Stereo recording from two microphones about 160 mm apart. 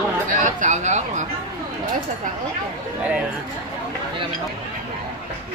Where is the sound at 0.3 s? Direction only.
50° right (ahead or behind).